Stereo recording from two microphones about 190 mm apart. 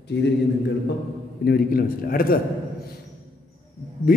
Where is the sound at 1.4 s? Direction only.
55° left (ahead or behind).